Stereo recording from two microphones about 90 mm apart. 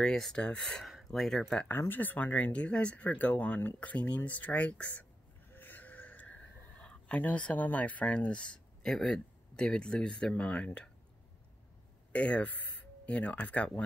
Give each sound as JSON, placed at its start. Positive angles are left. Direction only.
{"t": 0.0, "sound": "speech", "side_deg": 5}
{"t": 1.7, "sound": "speech", "side_deg": 20}
{"t": 5.5, "sound": "a sound", "side_deg": 20}
{"t": 6.8, "sound": "speech", "side_deg": 10}
{"t": 12.1, "sound": "speech", "side_deg": 15}